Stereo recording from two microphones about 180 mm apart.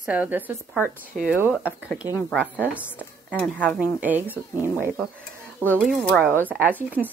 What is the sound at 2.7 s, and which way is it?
Speech, 10° right (ahead or behind).